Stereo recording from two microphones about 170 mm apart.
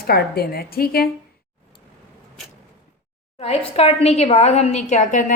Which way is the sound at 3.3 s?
40° left (ahead or behind).